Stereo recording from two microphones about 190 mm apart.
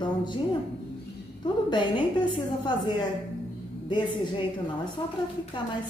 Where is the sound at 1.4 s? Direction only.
25° left (ahead or behind).